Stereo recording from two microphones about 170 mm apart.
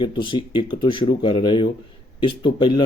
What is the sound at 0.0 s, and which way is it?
Speech, 30° left (ahead or behind).